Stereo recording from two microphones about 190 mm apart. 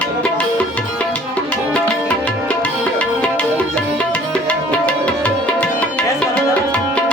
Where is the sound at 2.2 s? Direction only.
5° left (ahead or behind).